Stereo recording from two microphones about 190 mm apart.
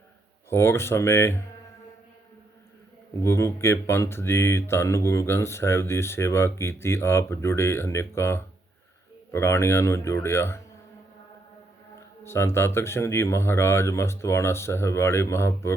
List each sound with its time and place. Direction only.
0.5 s speech: 15° left (ahead or behind)
3.2 s speech: 15° left (ahead or behind)
12.2 s speech: 15° left (ahead or behind)